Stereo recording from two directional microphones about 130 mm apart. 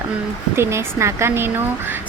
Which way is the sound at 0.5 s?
20° right (ahead or behind).